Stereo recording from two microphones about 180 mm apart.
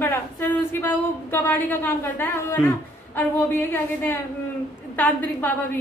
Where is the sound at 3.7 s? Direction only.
10° left (ahead or behind).